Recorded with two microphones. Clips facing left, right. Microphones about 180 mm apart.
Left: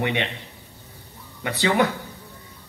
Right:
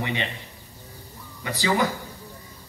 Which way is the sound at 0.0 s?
65° left (ahead or behind).